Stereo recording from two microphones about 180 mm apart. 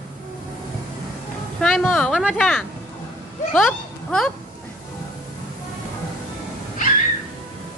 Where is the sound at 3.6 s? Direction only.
Centre (ahead or behind).